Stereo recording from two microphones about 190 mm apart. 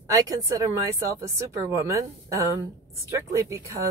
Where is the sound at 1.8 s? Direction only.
15° right (ahead or behind).